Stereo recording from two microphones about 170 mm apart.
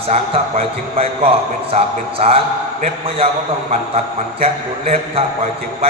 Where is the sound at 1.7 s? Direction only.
35° right (ahead or behind).